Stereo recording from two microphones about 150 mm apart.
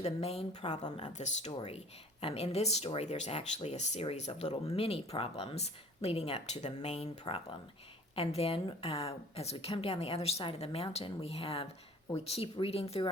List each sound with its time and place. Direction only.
0.0 s a woman's voice: 45° left (ahead or behind)